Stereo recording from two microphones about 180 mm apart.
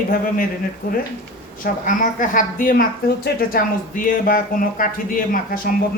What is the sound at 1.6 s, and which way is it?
Speech, 45° left (ahead or behind).